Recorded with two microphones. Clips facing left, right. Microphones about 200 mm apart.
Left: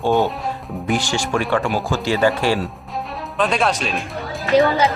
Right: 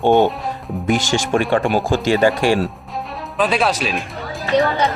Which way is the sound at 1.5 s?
30° right (ahead or behind).